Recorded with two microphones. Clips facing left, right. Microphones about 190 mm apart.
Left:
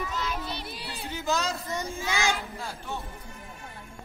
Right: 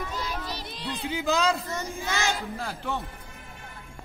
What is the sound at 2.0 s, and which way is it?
Child singing, 15° left (ahead or behind).